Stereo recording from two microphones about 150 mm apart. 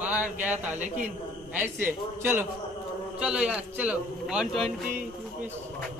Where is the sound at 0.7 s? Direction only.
55° right (ahead or behind).